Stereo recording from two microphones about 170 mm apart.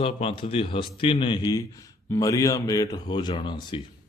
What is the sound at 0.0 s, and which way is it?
A man's voice, 35° left (ahead or behind).